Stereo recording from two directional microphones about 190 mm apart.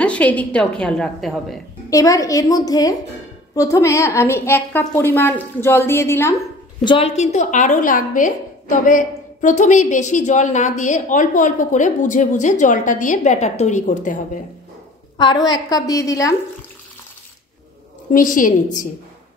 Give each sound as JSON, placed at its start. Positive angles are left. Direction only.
{"t": 0.0, "sound": "a woman's voice", "side_deg": 5}
{"t": 1.9, "sound": "a woman's voice", "side_deg": 15}
{"t": 6.8, "sound": "a woman's voice", "side_deg": 30}
{"t": 15.1, "sound": "a woman's voice", "side_deg": 20}
{"t": 18.1, "sound": "a woman's voice", "side_deg": 45}